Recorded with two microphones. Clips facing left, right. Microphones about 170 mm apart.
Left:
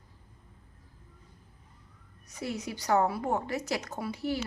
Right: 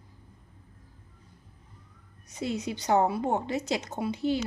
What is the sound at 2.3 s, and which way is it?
A woman's voice, 20° right (ahead or behind).